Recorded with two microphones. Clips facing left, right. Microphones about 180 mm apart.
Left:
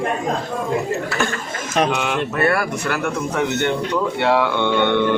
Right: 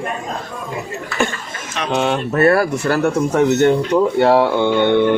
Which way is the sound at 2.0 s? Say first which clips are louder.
Right 4 dB; 35° right (ahead or behind).